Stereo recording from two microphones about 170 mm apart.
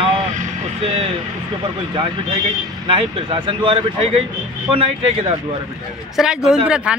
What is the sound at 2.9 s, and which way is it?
Speech, 30° right (ahead or behind).